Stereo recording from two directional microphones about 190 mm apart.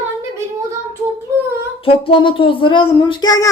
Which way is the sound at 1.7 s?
30° left (ahead or behind).